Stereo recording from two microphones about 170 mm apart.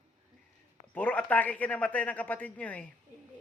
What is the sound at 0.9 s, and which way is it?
A man's voice, 10° left (ahead or behind).